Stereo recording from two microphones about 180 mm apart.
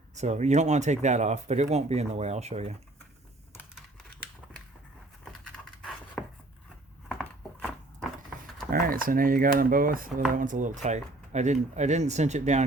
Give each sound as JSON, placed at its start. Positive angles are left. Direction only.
{"t": 0.1, "sound": "speech", "side_deg": -40}
{"t": 5.3, "sound": "a sound", "side_deg": 5}
{"t": 8.7, "sound": "speech", "side_deg": -50}